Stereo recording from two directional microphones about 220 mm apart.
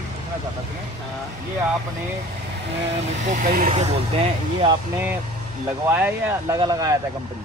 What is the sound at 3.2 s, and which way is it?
Speech, 35° right (ahead or behind).